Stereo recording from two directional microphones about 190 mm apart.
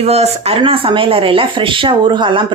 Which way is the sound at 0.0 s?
35° right (ahead or behind).